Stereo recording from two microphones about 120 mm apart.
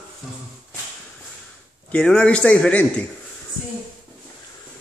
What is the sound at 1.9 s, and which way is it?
A man's voice, 10° left (ahead or behind).